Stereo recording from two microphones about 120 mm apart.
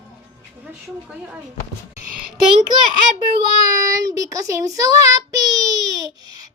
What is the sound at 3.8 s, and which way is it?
Child singing, 30° right (ahead or behind).